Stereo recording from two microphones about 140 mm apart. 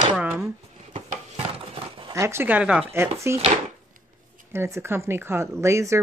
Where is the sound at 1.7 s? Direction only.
40° right (ahead or behind).